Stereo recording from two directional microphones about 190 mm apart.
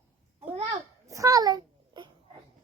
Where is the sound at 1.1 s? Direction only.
15° right (ahead or behind).